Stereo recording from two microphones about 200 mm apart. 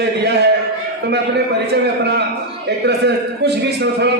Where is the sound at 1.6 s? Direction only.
55° right (ahead or behind).